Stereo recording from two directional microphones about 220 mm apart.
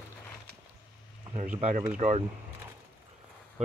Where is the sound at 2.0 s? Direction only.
30° right (ahead or behind).